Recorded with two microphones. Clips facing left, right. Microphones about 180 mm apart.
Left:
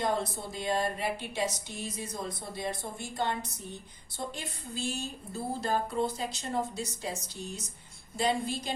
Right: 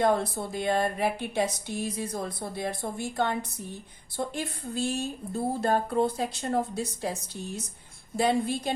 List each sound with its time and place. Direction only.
0.0 s speech: 60° right (ahead or behind)